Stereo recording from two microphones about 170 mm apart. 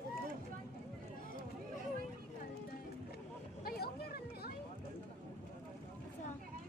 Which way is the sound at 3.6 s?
65° left (ahead or behind).